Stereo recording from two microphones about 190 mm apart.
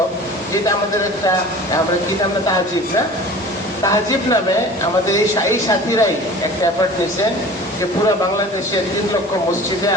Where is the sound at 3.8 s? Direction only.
15° left (ahead or behind).